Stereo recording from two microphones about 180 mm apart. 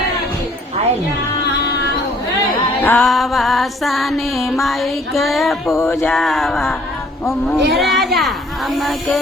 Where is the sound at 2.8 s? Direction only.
5° left (ahead or behind).